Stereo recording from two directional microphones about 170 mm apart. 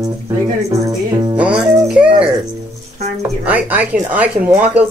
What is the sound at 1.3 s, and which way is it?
Music, 5° right (ahead or behind).